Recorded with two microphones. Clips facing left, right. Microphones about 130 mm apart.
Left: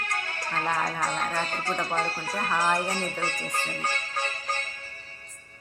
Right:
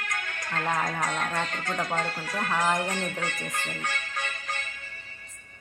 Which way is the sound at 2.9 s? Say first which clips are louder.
Left 1 dB; 35° left (ahead or behind).